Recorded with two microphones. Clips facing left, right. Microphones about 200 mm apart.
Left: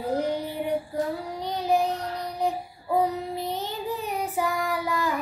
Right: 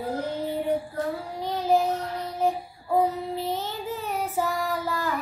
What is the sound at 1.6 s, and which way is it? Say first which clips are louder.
Child singing: right 1 dB; 15° left (ahead or behind).